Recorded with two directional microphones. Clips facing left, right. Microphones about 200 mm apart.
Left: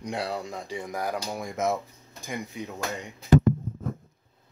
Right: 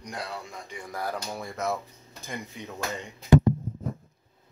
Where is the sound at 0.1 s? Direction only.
35° left (ahead or behind).